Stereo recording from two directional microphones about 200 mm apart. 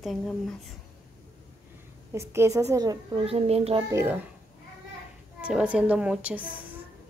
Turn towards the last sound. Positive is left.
turn(degrees=-5)  # may be behind; listen again after turning